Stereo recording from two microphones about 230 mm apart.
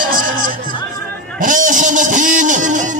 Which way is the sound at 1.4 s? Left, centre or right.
Right.